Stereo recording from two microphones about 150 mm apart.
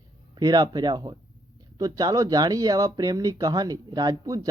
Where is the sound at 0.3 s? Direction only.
25° right (ahead or behind).